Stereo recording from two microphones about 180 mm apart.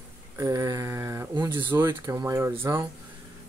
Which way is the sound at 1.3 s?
25° right (ahead or behind).